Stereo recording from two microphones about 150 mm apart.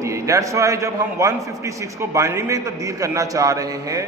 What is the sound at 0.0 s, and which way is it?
A man's voice, 20° right (ahead or behind).